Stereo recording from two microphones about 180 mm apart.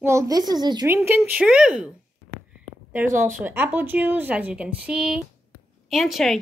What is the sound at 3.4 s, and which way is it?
A woman's voice, 10° right (ahead or behind).